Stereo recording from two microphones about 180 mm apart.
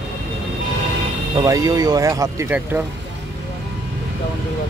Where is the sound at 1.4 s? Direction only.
20° right (ahead or behind).